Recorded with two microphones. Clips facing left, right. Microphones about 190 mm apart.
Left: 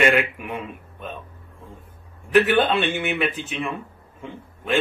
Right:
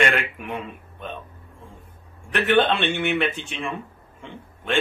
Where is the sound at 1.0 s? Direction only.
5° left (ahead or behind).